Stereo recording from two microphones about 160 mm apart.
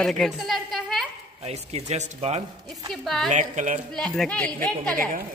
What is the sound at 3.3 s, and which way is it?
Speech, 50° right (ahead or behind).